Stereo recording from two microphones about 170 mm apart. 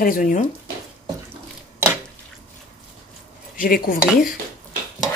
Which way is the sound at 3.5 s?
55° left (ahead or behind).